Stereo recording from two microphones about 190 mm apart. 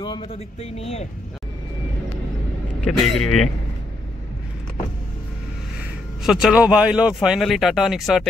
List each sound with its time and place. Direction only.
0.0 s speech: 30° left (ahead or behind)
2.8 s speech: 5° left (ahead or behind)
6.2 s speech: 5° right (ahead or behind)